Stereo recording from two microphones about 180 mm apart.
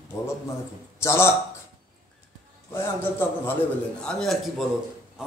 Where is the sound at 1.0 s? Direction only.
15° left (ahead or behind).